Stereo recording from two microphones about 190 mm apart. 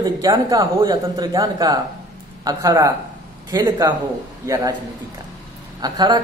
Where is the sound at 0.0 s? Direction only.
20° right (ahead or behind).